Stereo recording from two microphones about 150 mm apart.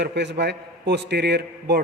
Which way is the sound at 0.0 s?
90° right.